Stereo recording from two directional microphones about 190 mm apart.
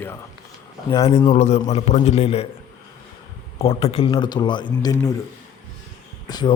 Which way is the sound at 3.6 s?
30° left (ahead or behind).